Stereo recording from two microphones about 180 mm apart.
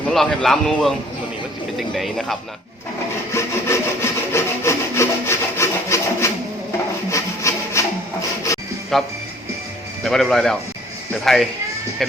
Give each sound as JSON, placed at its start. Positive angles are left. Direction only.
{"t": 0.1, "sound": "a man's voice", "side_deg": 0}
{"t": 3.3, "sound": "wood", "side_deg": 15}
{"t": 8.9, "sound": "a man's voice", "side_deg": 0}